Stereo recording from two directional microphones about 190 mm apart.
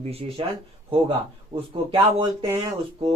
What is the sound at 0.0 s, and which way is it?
Speech, 30° right (ahead or behind).